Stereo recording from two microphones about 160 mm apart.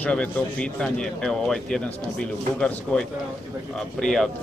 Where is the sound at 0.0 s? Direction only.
5° left (ahead or behind).